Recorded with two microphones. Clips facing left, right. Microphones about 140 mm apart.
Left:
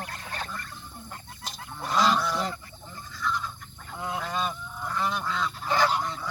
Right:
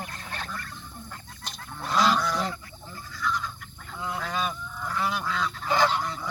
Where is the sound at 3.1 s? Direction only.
Centre (ahead or behind).